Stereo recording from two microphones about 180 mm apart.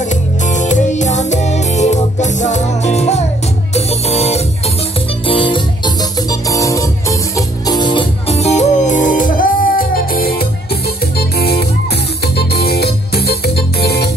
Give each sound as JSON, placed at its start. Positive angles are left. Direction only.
{"t": 0.1, "sound": "music", "side_deg": 40}